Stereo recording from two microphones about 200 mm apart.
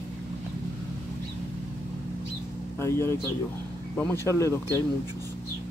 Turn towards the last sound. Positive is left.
turn(degrees=15)  # may be behind; listen again after turning